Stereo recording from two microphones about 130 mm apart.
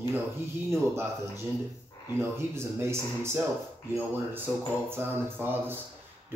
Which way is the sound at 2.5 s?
20° right (ahead or behind).